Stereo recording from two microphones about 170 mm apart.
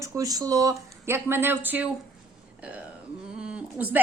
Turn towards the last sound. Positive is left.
turn(degrees=-10)  # may be behind; listen again after turning